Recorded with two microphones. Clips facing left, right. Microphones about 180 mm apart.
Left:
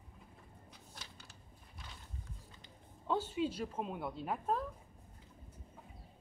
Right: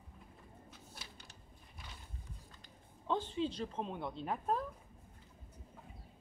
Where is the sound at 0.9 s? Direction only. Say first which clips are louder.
Left 3 dB; 15° right (ahead or behind).